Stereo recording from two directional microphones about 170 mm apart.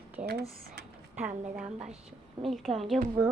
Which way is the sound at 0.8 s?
75° right (ahead or behind).